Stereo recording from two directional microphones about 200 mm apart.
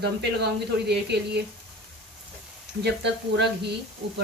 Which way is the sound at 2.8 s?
55° right (ahead or behind).